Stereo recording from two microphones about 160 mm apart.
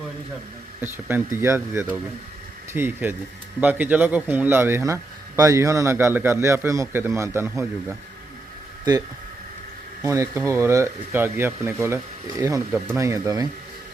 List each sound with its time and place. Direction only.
0.8 s a man's voice: 15° right (ahead or behind)